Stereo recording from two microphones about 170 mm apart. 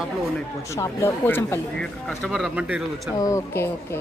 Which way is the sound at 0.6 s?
20° left (ahead or behind).